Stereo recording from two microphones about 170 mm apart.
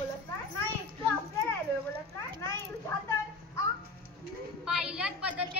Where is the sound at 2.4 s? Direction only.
15° left (ahead or behind).